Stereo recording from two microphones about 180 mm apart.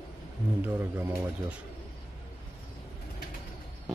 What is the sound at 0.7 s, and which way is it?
Speech, 15° right (ahead or behind).